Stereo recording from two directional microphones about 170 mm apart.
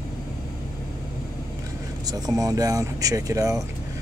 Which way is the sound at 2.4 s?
20° right (ahead or behind).